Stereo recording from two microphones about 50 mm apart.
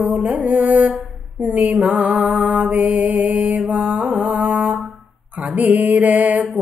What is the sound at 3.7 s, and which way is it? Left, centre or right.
Music, right.